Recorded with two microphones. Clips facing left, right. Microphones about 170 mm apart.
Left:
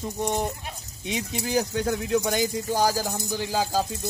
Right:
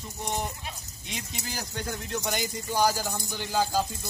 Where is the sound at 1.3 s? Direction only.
60° left (ahead or behind).